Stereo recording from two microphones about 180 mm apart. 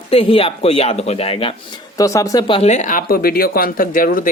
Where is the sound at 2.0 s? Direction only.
20° left (ahead or behind).